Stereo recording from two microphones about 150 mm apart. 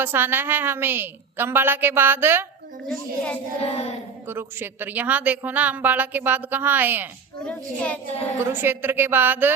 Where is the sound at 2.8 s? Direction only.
5° left (ahead or behind).